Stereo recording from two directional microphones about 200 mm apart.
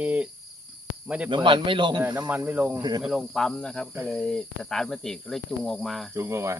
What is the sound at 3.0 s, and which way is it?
Speech, centre (ahead or behind).